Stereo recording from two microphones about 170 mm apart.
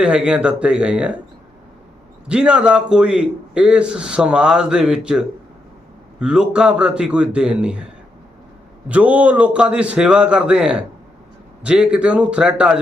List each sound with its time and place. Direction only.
0.0 s a man's voice: 5° right (ahead or behind)
2.2 s a man's voice: 5° right (ahead or behind)
8.9 s a man's voice: 10° right (ahead or behind)